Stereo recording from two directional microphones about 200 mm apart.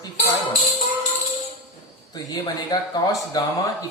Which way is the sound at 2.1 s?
20° left (ahead or behind).